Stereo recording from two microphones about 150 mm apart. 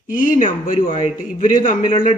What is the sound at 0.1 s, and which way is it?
Speech, 60° left (ahead or behind).